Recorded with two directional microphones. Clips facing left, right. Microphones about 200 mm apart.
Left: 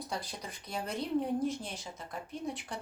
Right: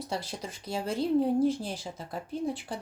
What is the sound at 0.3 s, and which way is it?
Speech, 30° right (ahead or behind).